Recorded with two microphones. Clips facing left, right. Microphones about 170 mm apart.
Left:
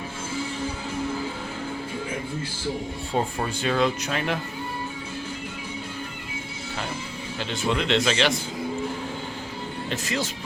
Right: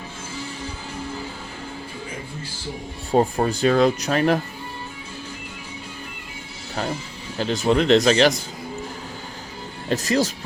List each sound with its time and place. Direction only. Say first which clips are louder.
3.1 s speech: right 8 dB; 40° right (ahead or behind)
7.3 s speech: right 7 dB; 40° right (ahead or behind)
9.9 s speech: right 9 dB; 40° right (ahead or behind)